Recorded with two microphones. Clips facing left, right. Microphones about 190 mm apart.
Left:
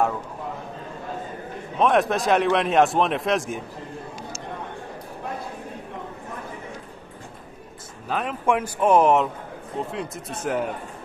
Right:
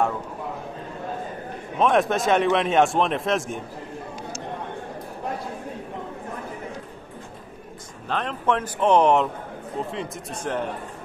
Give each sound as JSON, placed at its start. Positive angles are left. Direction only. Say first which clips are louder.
{"t": 1.8, "sound": "a man's voice", "louder": "even", "side_deg": 0}
{"t": 8.1, "sound": "a man's voice", "louder": "left 1 dB", "side_deg": 5}